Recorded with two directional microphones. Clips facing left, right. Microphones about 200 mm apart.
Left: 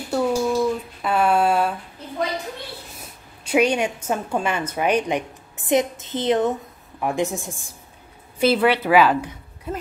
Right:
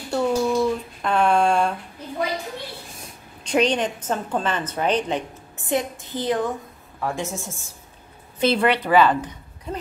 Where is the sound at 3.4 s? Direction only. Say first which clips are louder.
Left 1 dB; 10° left (ahead or behind).